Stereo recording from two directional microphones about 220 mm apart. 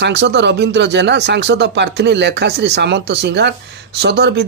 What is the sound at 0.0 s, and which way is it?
Speech, 50° right (ahead or behind).